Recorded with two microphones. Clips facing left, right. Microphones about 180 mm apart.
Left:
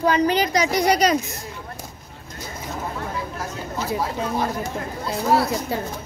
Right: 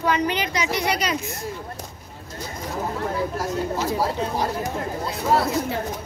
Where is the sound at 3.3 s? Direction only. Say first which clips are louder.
Right 5 dB; 35° right (ahead or behind).